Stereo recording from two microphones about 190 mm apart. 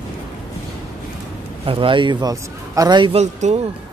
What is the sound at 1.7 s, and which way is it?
A man's voice, 25° right (ahead or behind).